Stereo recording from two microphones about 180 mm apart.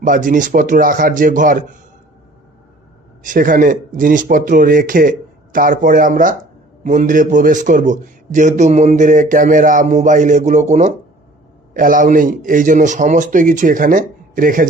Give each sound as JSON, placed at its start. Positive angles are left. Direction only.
{"t": 0.0, "sound": "a man's voice", "side_deg": -45}
{"t": 3.2, "sound": "a man's voice", "side_deg": -50}